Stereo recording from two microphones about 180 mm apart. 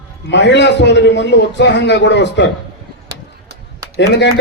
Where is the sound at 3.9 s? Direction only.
65° left (ahead or behind).